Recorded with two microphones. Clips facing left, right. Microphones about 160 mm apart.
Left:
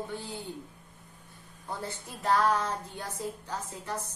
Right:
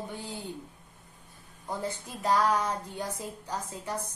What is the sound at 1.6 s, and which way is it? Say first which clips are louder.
Speech: right 3 dB; 15° right (ahead or behind).